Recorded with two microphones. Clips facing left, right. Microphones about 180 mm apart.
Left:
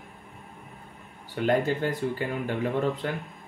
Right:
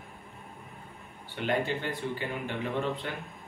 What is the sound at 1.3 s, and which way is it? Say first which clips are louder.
Speech: left 5 dB; 40° left (ahead or behind).